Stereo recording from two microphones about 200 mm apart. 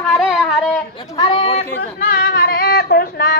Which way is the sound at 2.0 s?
50° left (ahead or behind).